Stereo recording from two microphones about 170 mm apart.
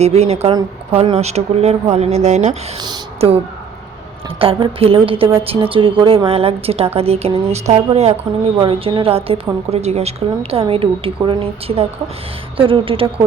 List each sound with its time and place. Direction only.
0.0 s a woman's voice: 35° right (ahead or behind)